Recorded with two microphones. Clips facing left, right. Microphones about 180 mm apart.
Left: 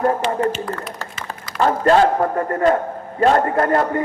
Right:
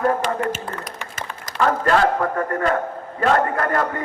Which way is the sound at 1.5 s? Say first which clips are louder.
Left 3 dB; 30° left (ahead or behind).